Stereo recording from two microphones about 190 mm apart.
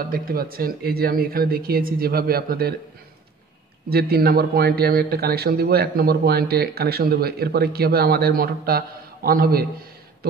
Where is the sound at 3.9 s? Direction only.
55° right (ahead or behind).